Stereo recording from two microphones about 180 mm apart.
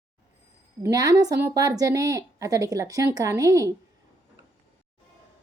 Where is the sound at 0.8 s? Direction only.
20° right (ahead or behind).